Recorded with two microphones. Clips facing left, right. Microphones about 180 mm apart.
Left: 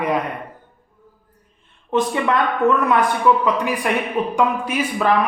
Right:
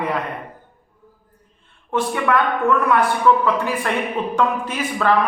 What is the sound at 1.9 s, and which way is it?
A woman's voice, 20° left (ahead or behind).